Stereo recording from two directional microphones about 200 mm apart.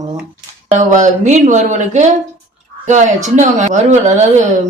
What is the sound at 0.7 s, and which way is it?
Speech, 40° right (ahead or behind).